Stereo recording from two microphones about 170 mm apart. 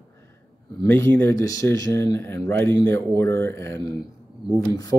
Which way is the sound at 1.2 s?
15° left (ahead or behind).